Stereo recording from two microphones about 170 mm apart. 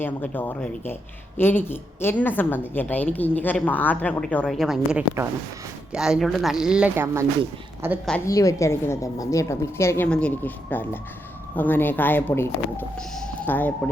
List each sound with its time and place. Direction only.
0.0 s a woman's voice: 10° left (ahead or behind); by 8.0 s 15° right (ahead or behind)
8.3 s a woman's voice: 20° left (ahead or behind)